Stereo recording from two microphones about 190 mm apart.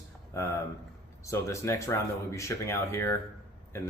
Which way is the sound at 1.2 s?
15° left (ahead or behind).